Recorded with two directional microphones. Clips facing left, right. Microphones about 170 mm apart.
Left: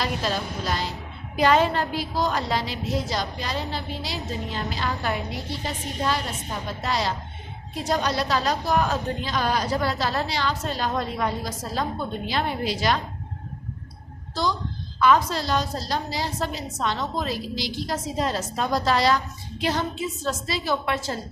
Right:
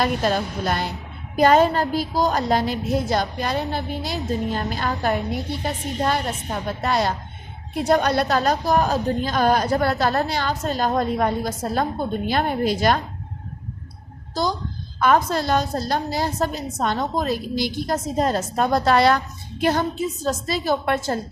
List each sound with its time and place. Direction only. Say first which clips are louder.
0.0 s a woman's voice: right 6 dB; 50° right (ahead or behind)
1.4 s a woman's voice: right 4 dB; 45° right (ahead or behind)
14.9 s a woman's voice: right 2 dB; 50° right (ahead or behind)